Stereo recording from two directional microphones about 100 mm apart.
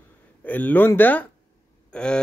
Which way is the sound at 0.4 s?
15° left (ahead or behind).